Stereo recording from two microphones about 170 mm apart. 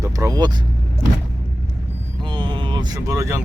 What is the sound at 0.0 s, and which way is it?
Vehicle, 20° right (ahead or behind).